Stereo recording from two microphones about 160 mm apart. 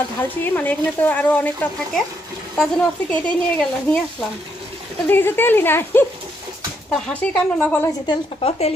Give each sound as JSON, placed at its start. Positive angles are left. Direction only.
{"t": 0.5, "sound": "speech", "side_deg": 10}
{"t": 8.1, "sound": "speech", "side_deg": 35}